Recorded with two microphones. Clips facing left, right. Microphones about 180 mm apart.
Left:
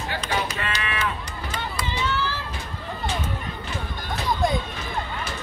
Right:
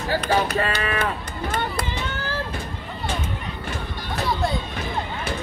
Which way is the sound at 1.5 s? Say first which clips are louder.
Right 3 dB; 55° right (ahead or behind).